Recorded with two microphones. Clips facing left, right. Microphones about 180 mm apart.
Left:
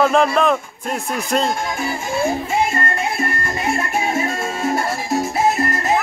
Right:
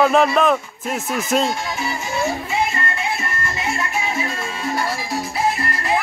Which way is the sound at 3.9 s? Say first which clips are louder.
Left 4 dB; 50° left (ahead or behind).